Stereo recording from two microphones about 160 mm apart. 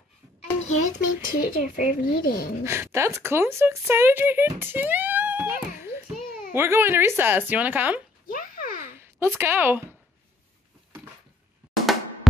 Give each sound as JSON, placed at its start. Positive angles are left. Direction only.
{"t": 0.7, "sound": "a child's voice", "side_deg": 50}
{"t": 2.6, "sound": "speech", "side_deg": -15}
{"t": 8.3, "sound": "a sound", "side_deg": 60}
{"t": 9.4, "sound": "speech", "side_deg": -15}
{"t": 11.7, "sound": "drum", "side_deg": 0}